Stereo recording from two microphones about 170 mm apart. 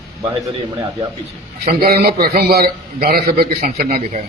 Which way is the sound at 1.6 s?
65° right (ahead or behind).